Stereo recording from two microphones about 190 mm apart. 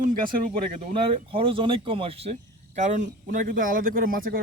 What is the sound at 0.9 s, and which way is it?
Speech, 30° right (ahead or behind).